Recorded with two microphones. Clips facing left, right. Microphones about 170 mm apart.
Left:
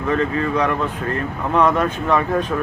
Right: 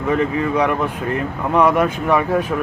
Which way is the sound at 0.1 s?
15° right (ahead or behind).